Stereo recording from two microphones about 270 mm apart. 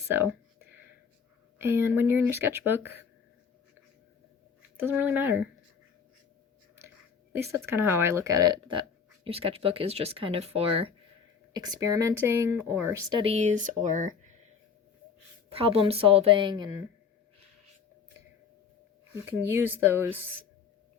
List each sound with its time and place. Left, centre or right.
0.1 s a sound: centre
1.5 s speech: centre
4.8 s speech: centre
7.3 s speech: centre; by 14.3 s right
15.4 s speech: right
19.1 s speech: centre